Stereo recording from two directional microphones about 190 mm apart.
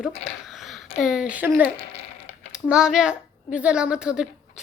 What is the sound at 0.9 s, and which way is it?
Speech, centre (ahead or behind).